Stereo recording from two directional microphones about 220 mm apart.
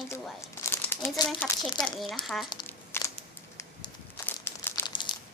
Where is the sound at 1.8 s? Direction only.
Centre (ahead or behind).